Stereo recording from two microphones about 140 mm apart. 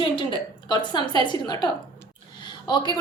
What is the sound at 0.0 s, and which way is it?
A woman's voice, 35° left (ahead or behind).